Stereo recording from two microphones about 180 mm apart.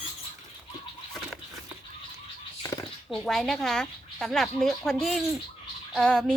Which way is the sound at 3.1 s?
Centre (ahead or behind).